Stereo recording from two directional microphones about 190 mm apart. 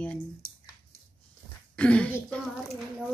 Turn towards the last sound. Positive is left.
turn(degrees=5)  # may be behind; listen again after turning